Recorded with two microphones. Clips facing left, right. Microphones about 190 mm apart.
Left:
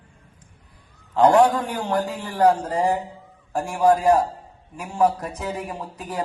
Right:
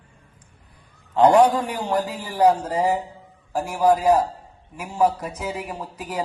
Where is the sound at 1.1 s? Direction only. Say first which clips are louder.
Right 1 dB; 5° right (ahead or behind).